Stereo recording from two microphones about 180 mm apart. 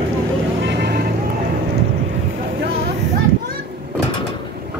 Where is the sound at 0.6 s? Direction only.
70° right (ahead or behind).